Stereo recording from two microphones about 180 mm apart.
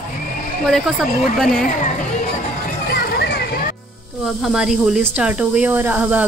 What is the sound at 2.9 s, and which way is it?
Children playing, 65° left (ahead or behind).